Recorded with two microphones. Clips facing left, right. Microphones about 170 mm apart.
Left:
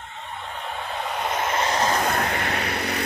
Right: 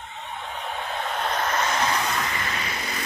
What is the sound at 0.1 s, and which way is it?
Vehicle, centre (ahead or behind).